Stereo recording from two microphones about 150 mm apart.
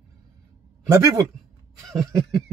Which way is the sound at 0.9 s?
25° right (ahead or behind).